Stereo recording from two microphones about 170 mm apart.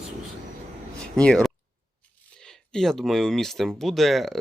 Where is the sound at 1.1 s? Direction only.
5° left (ahead or behind).